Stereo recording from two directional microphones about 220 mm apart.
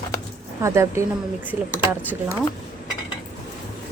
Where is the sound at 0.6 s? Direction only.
15° right (ahead or behind).